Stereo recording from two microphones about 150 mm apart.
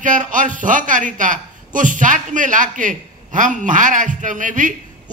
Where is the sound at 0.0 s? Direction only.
60° right (ahead or behind).